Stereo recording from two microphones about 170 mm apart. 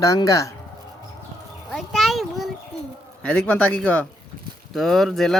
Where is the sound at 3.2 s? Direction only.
5° left (ahead or behind).